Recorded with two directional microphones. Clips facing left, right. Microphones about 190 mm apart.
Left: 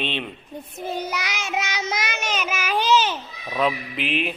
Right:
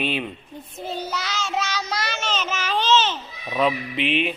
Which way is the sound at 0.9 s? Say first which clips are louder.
Left 1 dB; 15° left (ahead or behind).